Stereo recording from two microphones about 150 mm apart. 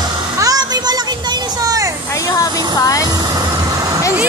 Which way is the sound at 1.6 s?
25° right (ahead or behind).